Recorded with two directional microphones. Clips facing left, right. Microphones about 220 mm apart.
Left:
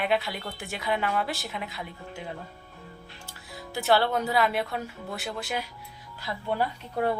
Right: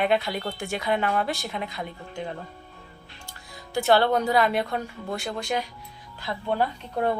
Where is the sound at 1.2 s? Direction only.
5° left (ahead or behind).